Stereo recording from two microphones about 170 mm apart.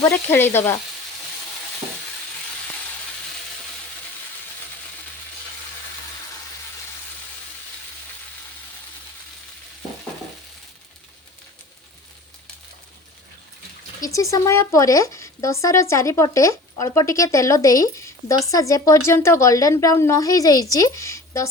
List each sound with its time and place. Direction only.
0.1 s sizzle: 10° left (ahead or behind)
14.0 s speech: 20° left (ahead or behind)